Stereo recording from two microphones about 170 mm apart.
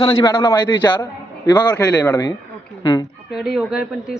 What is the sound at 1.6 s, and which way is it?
Speech, 10° left (ahead or behind).